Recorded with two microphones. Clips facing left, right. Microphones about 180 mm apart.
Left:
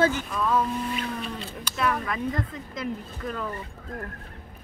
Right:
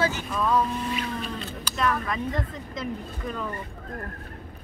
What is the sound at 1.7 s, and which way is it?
Speech, 5° left (ahead or behind).